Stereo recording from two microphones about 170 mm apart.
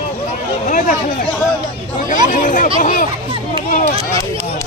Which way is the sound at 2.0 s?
50° left (ahead or behind).